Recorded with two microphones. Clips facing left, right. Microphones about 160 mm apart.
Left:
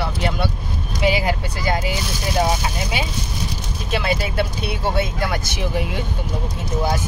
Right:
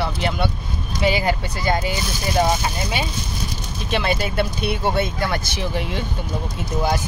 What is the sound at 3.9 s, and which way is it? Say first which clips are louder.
Speech: even; 5° left (ahead or behind).